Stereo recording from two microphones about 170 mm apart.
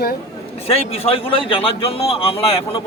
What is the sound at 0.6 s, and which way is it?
A man's voice, 35° left (ahead or behind).